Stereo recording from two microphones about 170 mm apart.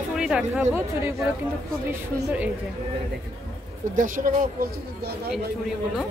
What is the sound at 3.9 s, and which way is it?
Speech, 50° right (ahead or behind).